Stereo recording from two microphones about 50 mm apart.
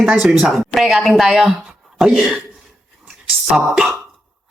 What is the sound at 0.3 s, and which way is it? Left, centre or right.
A man's voice, centre.